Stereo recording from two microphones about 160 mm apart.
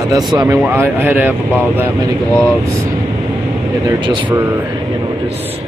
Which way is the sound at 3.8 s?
30° right (ahead or behind).